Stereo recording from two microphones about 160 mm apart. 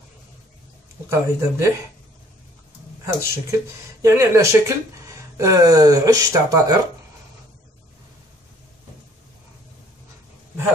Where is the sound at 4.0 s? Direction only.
20° right (ahead or behind).